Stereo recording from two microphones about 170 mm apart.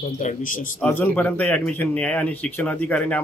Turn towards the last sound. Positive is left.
turn(degrees=10)  # may be behind; listen again after turning